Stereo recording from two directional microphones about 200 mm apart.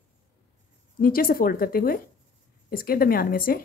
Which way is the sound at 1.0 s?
45° left (ahead or behind).